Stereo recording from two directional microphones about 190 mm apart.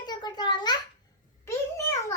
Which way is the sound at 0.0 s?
20° left (ahead or behind).